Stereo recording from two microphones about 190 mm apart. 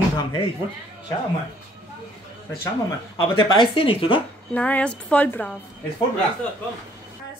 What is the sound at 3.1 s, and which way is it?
Speech, 25° left (ahead or behind).